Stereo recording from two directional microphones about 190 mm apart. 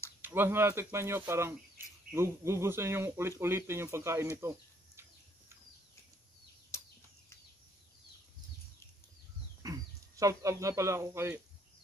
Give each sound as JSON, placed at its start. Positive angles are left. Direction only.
{"t": 0.2, "sound": "speech", "side_deg": -10}
{"t": 6.7, "sound": "a sound", "side_deg": 15}
{"t": 9.6, "sound": "speech", "side_deg": -20}